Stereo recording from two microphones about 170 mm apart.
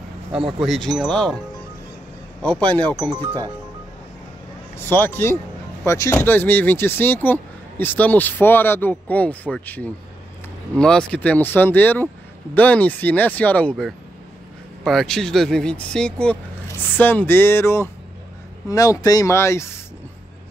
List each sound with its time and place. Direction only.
0.6 s speech: centre (ahead or behind)
2.4 s speech: 5° left (ahead or behind)
4.8 s speech: 15° left (ahead or behind)